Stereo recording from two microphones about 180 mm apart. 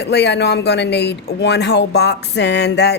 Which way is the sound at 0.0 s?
70° left (ahead or behind).